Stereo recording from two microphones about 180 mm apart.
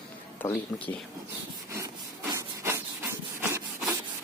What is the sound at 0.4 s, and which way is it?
Speech, 15° left (ahead or behind).